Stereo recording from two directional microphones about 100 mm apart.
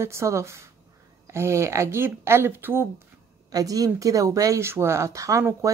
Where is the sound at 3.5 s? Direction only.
35° right (ahead or behind).